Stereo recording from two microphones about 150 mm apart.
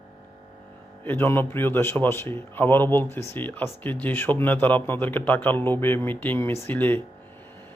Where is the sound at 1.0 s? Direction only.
10° left (ahead or behind).